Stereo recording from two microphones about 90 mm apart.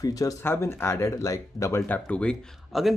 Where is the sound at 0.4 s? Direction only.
25° left (ahead or behind).